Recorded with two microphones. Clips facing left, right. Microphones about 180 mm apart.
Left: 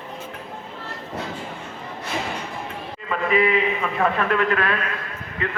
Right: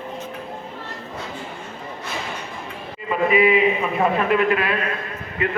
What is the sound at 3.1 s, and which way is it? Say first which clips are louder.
A man's voice: right 3 dB; 15° right (ahead or behind).